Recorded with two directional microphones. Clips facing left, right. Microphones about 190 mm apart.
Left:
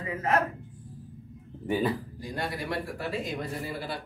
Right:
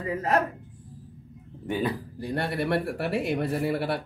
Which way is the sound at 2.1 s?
65° right (ahead or behind).